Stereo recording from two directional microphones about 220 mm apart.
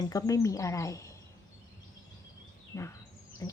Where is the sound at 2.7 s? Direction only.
15° left (ahead or behind).